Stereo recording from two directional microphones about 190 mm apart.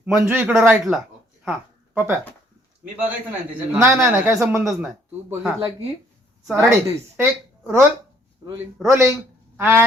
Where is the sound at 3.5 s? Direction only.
10° right (ahead or behind).